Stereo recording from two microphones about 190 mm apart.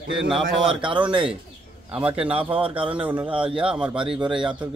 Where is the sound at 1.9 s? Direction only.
5° right (ahead or behind).